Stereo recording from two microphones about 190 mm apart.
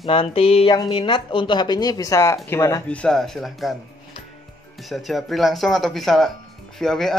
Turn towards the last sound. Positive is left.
turn(degrees=0)  # may be behind; listen again after turning